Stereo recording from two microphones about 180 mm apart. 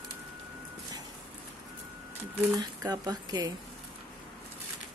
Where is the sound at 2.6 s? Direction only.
20° right (ahead or behind).